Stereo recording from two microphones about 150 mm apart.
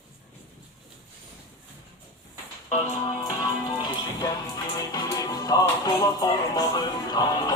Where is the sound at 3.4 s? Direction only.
30° left (ahead or behind).